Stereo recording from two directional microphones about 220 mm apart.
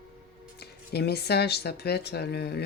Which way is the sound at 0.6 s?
45° left (ahead or behind).